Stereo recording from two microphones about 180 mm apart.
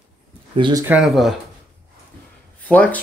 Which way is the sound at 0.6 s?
25° right (ahead or behind).